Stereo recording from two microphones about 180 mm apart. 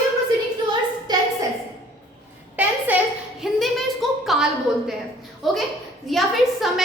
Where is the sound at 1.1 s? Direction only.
20° right (ahead or behind).